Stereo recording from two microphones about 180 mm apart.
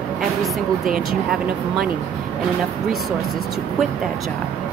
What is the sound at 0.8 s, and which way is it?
Speech, centre (ahead or behind).